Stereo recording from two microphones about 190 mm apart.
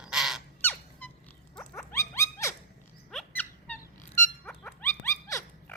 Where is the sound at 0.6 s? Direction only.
10° left (ahead or behind).